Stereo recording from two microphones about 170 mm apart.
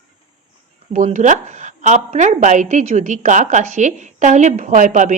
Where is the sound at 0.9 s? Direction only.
45° right (ahead or behind).